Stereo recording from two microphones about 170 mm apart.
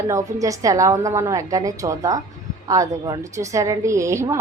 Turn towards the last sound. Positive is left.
turn(degrees=-15)  # may be behind; listen again after turning